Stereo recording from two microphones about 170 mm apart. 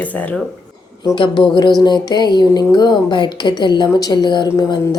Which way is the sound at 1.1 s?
30° left (ahead or behind).